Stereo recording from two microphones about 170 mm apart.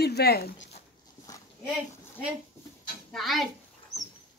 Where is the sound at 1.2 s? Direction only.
20° left (ahead or behind).